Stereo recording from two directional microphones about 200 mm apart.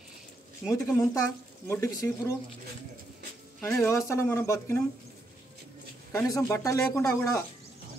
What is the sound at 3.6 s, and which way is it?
Speech, 10° left (ahead or behind).